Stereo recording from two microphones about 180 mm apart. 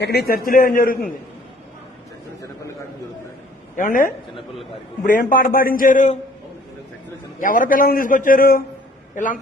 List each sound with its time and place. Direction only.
0.0 s a man's voice: 60° left (ahead or behind)
3.8 s a man's voice: 50° left (ahead or behind)
7.3 s a man's voice: 45° left (ahead or behind)